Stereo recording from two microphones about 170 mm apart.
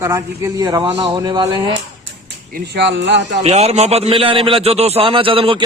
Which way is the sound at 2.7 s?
90° right.